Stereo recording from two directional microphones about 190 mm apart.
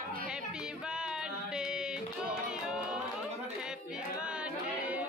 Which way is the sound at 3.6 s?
5° right (ahead or behind).